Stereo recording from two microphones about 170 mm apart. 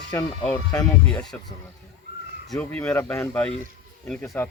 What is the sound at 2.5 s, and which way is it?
Speech, 10° left (ahead or behind).